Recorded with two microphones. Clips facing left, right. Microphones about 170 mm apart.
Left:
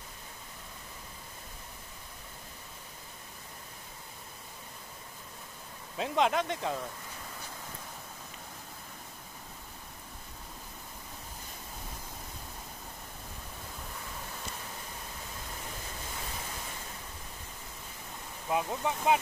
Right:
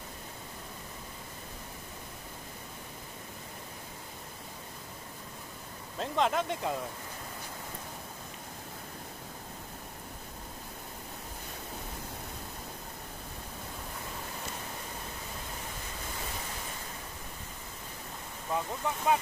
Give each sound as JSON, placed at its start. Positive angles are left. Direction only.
{"t": 5.9, "sound": "speech", "side_deg": 0}
{"t": 18.5, "sound": "speech", "side_deg": 15}